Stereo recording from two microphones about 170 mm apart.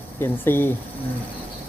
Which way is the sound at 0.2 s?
15° left (ahead or behind).